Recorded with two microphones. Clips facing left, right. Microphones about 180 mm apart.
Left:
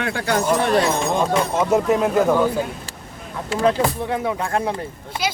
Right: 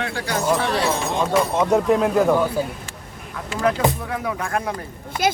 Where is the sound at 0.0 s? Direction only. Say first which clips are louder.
Left 3 dB; 55° left (ahead or behind).